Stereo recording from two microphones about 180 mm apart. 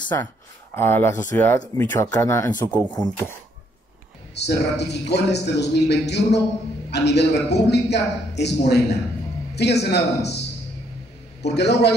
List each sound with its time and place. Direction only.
0.1 s speech: 15° left (ahead or behind)
4.4 s a man's voice: 70° left (ahead or behind)
11.4 s a man's voice: 70° left (ahead or behind)